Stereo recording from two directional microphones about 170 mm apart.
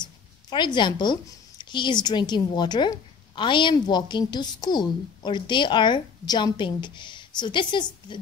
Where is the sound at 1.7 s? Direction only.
25° left (ahead or behind).